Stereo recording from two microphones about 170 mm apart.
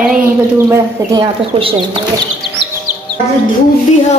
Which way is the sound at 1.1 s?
30° right (ahead or behind).